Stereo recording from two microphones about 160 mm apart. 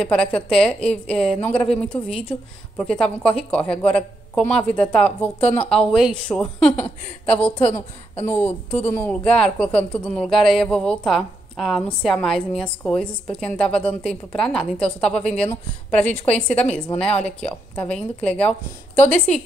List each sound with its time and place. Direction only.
0.0 s a woman's voice: 5° left (ahead or behind)